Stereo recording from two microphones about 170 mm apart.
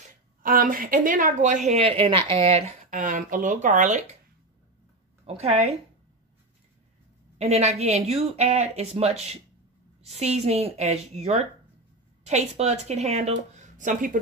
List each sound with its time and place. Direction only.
0.4 s speech: 55° right (ahead or behind); by 2.6 s 35° right (ahead or behind)
2.9 s speech: 50° right (ahead or behind)
5.2 s speech: 40° right (ahead or behind)
7.3 s speech: 40° right (ahead or behind)